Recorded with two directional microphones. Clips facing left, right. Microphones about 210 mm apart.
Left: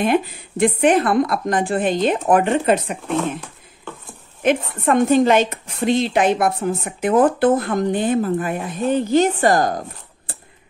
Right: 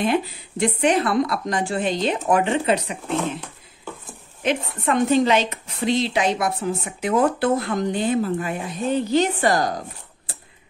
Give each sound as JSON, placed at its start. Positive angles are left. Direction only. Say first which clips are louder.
{"t": 0.0, "sound": "speech", "louder": "left 3 dB", "side_deg": 55}
{"t": 4.4, "sound": "speech", "louder": "left 5 dB", "side_deg": 50}